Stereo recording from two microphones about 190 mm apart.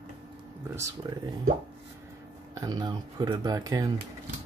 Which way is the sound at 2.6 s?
20° right (ahead or behind).